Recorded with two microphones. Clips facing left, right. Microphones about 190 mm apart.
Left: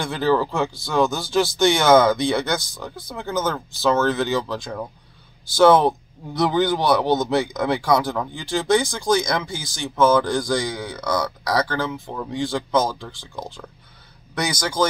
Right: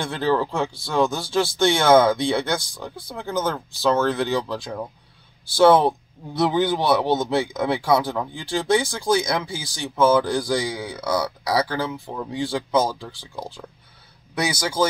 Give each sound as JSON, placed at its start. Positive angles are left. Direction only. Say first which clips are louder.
{"t": 0.1, "sound": "speech", "louder": "left 2 dB", "side_deg": 5}
{"t": 1.0, "sound": "speech", "louder": "left 1 dB", "side_deg": -30}
{"t": 1.8, "sound": "speech", "louder": "even", "side_deg": 0}
{"t": 2.4, "sound": "speech", "louder": "left 1 dB", "side_deg": -30}
{"t": 3.2, "sound": "speech", "louder": "left 1 dB", "side_deg": 0}